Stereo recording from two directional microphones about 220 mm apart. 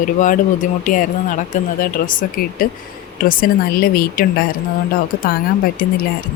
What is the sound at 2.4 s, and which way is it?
Speech, 40° left (ahead or behind).